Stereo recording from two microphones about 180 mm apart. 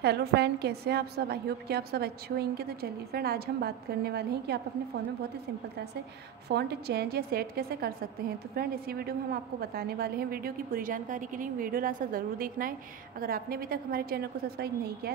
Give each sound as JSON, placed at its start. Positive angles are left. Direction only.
{"t": 0.0, "sound": "a woman's voice", "side_deg": -65}
{"t": 6.5, "sound": "a woman's voice", "side_deg": -65}